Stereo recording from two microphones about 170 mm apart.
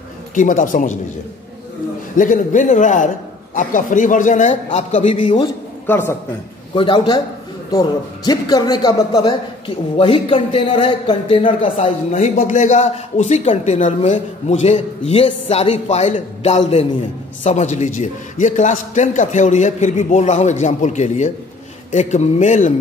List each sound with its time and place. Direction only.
0.3 s a man's voice: 50° left (ahead or behind)
2.1 s a man's voice: 50° left (ahead or behind); by 5.5 s 30° left (ahead or behind)
5.9 s a man's voice: 10° left (ahead or behind)
6.7 s a man's voice: 30° left (ahead or behind); by 22.7 s 45° left (ahead or behind)